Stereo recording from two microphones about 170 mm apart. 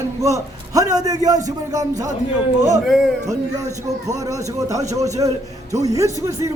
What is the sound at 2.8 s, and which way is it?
Speech, centre (ahead or behind).